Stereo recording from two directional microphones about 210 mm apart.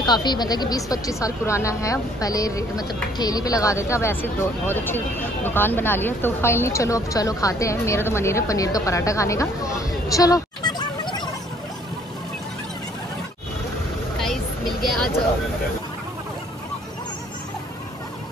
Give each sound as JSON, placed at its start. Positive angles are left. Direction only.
{"t": 0.0, "sound": "speech", "side_deg": 20}
{"t": 14.1, "sound": "vehicle", "side_deg": 0}